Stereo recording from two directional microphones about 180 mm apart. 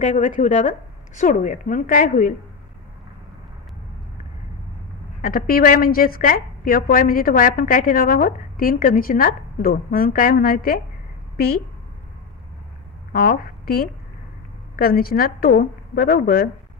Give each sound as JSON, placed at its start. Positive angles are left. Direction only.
{"t": 0.0, "sound": "a woman's voice", "side_deg": 45}
{"t": 5.2, "sound": "a woman's voice", "side_deg": 50}
{"t": 13.1, "sound": "a woman's voice", "side_deg": 55}